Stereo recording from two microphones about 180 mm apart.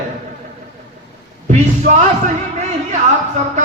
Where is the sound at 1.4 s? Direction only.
40° right (ahead or behind).